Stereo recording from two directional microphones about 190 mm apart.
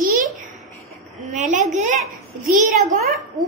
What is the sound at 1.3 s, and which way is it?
Speech, 40° right (ahead or behind).